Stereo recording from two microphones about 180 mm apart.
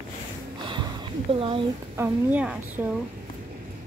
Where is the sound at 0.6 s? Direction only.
25° right (ahead or behind).